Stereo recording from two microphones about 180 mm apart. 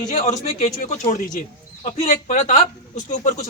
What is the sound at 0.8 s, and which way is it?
Speech, 45° left (ahead or behind).